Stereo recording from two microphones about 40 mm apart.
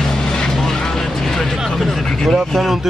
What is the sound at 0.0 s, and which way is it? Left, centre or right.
Vehicle, centre.